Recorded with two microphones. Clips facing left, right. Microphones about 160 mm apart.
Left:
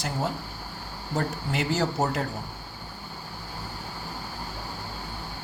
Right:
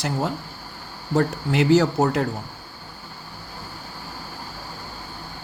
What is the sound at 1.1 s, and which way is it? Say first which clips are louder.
Speech: right 8 dB; 90° right.